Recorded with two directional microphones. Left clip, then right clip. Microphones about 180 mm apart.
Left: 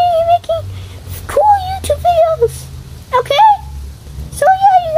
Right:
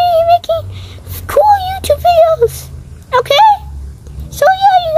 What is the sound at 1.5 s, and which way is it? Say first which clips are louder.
Synthetic singing: right 2 dB; 20° right (ahead or behind).